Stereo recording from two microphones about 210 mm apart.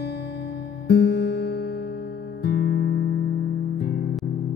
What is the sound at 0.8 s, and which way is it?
Music, 55° left (ahead or behind).